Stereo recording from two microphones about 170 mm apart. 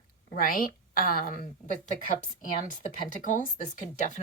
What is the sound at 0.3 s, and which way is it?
A woman's voice, 55° left (ahead or behind).